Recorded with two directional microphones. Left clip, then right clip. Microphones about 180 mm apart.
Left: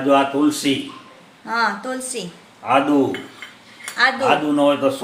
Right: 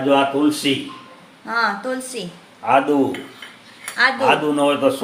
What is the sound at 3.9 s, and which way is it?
Speech, centre (ahead or behind).